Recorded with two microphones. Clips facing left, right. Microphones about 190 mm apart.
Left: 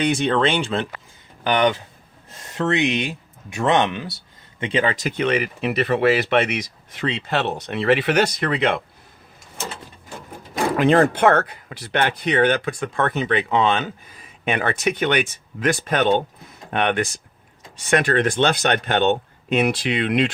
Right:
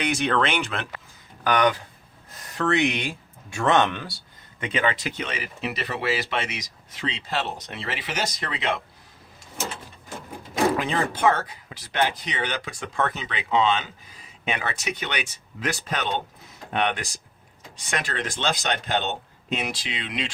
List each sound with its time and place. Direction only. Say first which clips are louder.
0.0 s speech: left 5 dB; 30° left (ahead or behind)
4.6 s speech: left 4 dB; 30° left (ahead or behind); by 8.8 s 60° left (ahead or behind)
10.8 s speech: left 10 dB; 60° left (ahead or behind)